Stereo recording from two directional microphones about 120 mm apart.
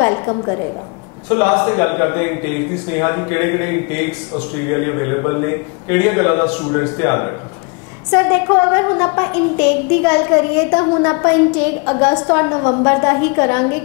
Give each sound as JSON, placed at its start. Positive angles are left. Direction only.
{"t": 0.0, "sound": "a woman's voice", "side_deg": 30}